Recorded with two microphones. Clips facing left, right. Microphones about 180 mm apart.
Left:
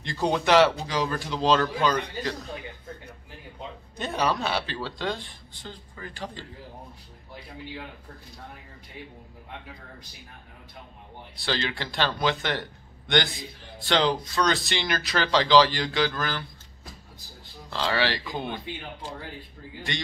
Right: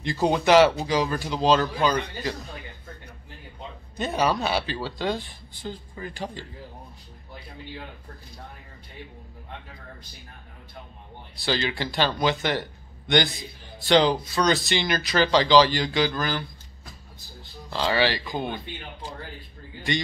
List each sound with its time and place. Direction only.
0.0 s speech: 5° right (ahead or behind)
3.9 s speech: 5° right (ahead or behind)
11.3 s speech: 5° right (ahead or behind)
17.6 s speech: centre (ahead or behind)